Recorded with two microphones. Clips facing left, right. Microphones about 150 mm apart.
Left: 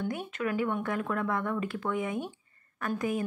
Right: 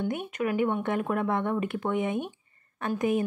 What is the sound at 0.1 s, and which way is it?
A woman's voice, 20° right (ahead or behind).